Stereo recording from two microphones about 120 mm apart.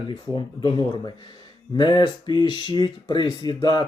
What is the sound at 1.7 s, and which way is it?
Speech, 40° left (ahead or behind).